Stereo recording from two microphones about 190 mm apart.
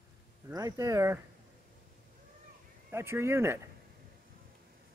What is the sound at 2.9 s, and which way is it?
Speech, 15° right (ahead or behind).